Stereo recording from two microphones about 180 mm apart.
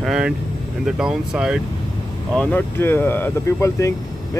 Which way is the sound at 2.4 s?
10° left (ahead or behind).